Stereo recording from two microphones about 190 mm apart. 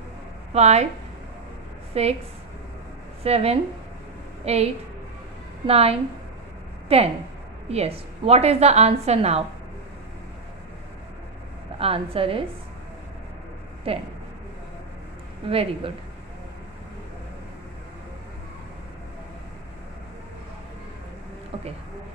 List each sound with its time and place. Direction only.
0.5 s speech: 35° right (ahead or behind)
2.0 s a woman's voice: 30° right (ahead or behind)
3.3 s a woman's voice: 30° right (ahead or behind)
5.7 s a woman's voice: 30° right (ahead or behind)
11.8 s a woman's voice: 30° right (ahead or behind)
13.9 s a woman's voice: 30° right (ahead or behind)
15.5 s a woman's voice: 30° right (ahead or behind)